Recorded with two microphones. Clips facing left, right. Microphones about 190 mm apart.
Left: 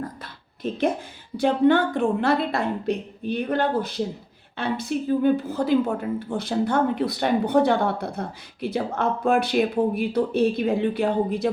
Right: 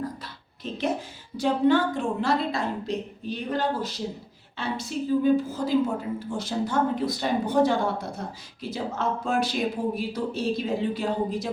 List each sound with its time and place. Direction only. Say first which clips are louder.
0.6 s speech: left 4 dB; 50° left (ahead or behind)